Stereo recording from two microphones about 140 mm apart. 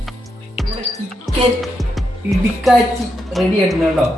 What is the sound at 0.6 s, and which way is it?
Music, centre (ahead or behind).